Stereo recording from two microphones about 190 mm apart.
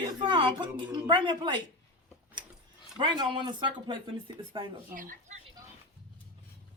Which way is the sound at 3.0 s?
25° right (ahead or behind).